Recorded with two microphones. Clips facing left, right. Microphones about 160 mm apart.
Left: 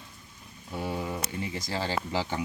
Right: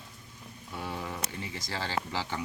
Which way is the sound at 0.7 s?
20° left (ahead or behind).